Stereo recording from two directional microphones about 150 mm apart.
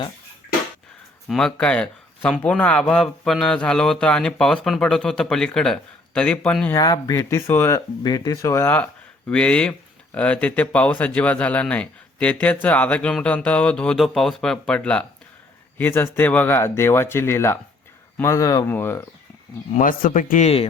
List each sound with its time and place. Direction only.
1.3 s speech: 5° left (ahead or behind)
6.7 s speech: 25° left (ahead or behind)
7.8 s speech: 25° left (ahead or behind)
19.7 s speech: 65° left (ahead or behind)